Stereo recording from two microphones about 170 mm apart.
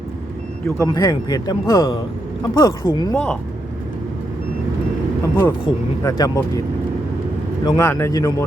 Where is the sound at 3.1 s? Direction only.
5° left (ahead or behind).